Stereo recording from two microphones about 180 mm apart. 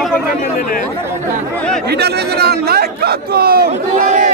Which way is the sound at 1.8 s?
65° right (ahead or behind).